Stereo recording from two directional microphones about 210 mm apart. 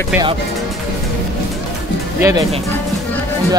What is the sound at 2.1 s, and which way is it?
Speech, 15° right (ahead or behind).